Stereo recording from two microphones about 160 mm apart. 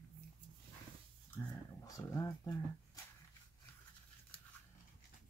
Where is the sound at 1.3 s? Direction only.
20° left (ahead or behind).